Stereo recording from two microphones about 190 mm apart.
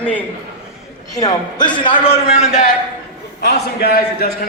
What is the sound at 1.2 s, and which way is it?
A man's voice, 20° left (ahead or behind).